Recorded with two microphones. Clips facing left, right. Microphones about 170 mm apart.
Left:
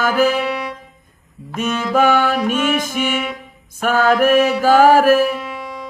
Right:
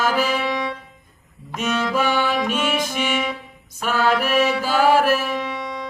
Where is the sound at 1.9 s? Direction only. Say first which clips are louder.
Left 8 dB; 50° left (ahead or behind).